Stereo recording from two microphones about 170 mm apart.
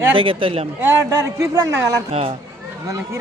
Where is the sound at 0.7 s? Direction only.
15° right (ahead or behind).